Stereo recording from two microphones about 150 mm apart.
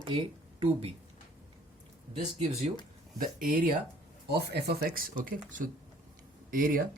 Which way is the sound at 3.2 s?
70° right (ahead or behind).